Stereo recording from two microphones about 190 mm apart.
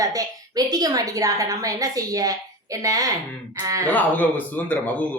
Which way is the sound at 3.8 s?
10° left (ahead or behind).